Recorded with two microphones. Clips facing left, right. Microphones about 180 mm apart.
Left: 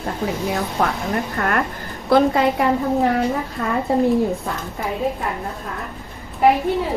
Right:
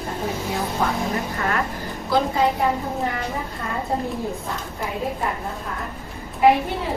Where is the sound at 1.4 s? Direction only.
55° left (ahead or behind).